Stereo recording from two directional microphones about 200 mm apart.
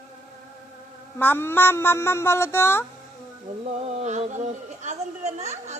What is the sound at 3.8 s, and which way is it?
Speech, 30° right (ahead or behind).